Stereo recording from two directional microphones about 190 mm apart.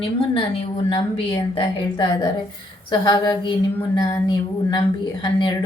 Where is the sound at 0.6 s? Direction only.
25° left (ahead or behind).